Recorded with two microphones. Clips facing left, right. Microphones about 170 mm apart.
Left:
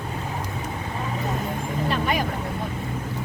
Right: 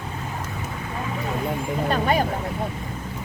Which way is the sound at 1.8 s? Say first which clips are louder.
Right 3 dB; 35° right (ahead or behind).